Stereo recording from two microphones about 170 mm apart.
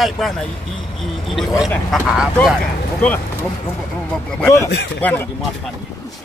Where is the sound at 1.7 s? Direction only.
10° left (ahead or behind).